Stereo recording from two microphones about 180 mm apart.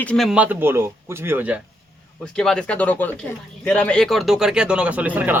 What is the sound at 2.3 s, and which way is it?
Speech, 5° left (ahead or behind).